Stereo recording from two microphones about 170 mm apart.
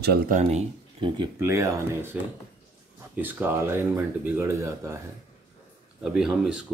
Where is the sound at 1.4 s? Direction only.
15° right (ahead or behind).